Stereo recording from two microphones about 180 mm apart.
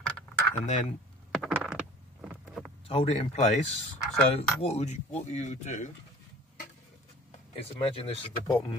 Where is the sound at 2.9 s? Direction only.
35° left (ahead or behind).